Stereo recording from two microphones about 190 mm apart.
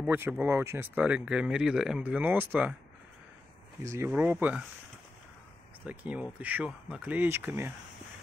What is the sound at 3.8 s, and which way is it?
Speech, 15° right (ahead or behind).